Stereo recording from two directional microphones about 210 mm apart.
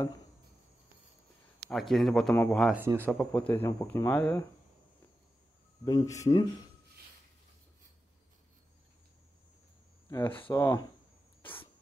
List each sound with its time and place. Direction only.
1.7 s speech: centre (ahead or behind)
2.6 s speech: 10° right (ahead or behind)
3.1 s speech: 5° left (ahead or behind)
5.9 s speech: 15° left (ahead or behind)
10.0 s speech: 10° left (ahead or behind)